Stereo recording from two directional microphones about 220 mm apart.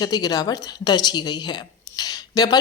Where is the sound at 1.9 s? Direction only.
15° left (ahead or behind).